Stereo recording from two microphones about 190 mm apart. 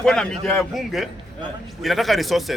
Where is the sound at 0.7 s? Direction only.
Centre (ahead or behind).